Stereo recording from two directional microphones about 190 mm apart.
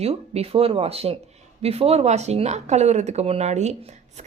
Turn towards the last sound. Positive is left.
turn(degrees=-35)  # may be behind; listen again after turning